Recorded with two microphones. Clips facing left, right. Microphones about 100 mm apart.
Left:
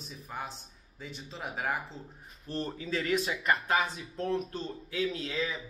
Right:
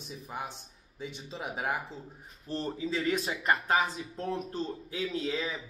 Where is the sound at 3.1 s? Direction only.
30° right (ahead or behind).